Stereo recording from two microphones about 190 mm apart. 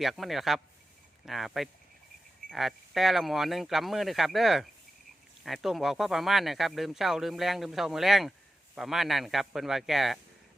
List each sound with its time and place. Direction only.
0.0 s speech: centre (ahead or behind)